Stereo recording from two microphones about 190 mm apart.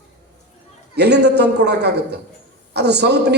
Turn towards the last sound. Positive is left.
turn(degrees=-65)  # may be behind; listen again after turning